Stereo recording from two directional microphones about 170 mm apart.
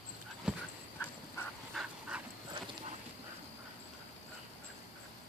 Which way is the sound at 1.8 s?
5° right (ahead or behind).